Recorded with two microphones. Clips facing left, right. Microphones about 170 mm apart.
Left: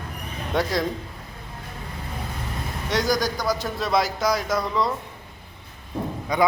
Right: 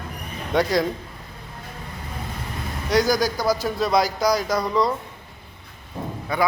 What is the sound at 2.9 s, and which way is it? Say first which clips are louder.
A man's voice: right 3 dB; centre (ahead or behind).